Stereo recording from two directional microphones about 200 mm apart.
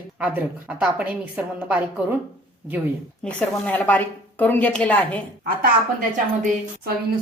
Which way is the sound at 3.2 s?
5° left (ahead or behind).